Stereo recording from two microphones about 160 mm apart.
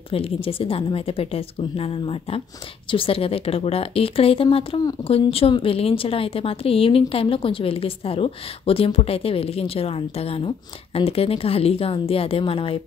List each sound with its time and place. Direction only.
0.1 s a woman's voice: 35° left (ahead or behind)